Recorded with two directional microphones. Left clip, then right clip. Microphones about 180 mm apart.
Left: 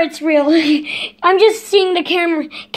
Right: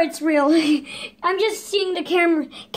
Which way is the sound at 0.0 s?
20° left (ahead or behind).